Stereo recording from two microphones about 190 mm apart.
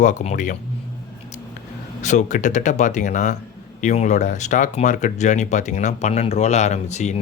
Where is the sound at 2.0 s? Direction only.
40° left (ahead or behind).